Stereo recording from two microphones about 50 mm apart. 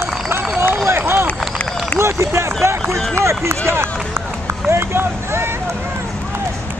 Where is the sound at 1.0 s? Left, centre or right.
Right.